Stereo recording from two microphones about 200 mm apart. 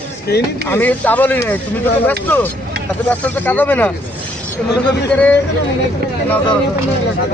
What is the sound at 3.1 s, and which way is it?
Speech, 10° left (ahead or behind).